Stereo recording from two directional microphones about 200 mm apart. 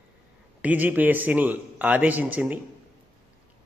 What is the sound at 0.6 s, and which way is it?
A man's voice, 10° right (ahead or behind).